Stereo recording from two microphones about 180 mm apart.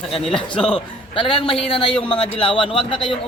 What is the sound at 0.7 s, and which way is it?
A man's voice, 30° left (ahead or behind).